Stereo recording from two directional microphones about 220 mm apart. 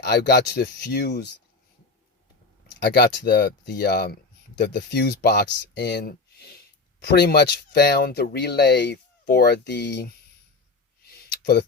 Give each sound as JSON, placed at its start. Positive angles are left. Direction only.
{"t": 0.0, "sound": "speech", "side_deg": 50}
{"t": 2.8, "sound": "speech", "side_deg": 50}
{"t": 11.0, "sound": "a sound", "side_deg": 45}